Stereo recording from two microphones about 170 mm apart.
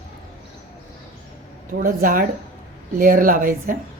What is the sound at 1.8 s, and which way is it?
A woman's voice, 55° right (ahead or behind).